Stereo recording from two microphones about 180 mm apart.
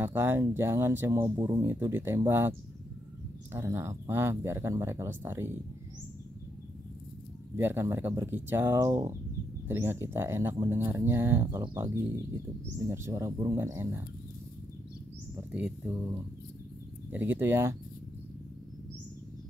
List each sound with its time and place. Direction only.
0.0 s speech: 10° right (ahead or behind)
3.5 s speech: 15° right (ahead or behind)
7.5 s speech: 15° right (ahead or behind)
15.5 s a sound: 5° right (ahead or behind)
17.1 s speech: 10° right (ahead or behind)